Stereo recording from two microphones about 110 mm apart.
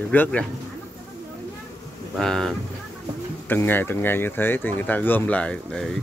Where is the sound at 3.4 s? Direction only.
20° left (ahead or behind).